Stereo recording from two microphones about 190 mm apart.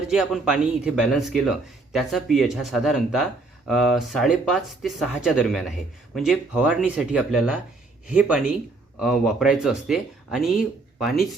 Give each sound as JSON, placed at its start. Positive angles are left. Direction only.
{"t": 0.1, "sound": "speech", "side_deg": -5}